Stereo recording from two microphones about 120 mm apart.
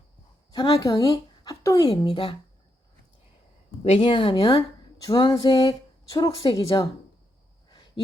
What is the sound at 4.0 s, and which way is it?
Speech, 40° left (ahead or behind).